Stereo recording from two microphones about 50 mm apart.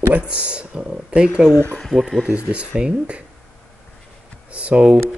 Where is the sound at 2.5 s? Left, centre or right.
Right.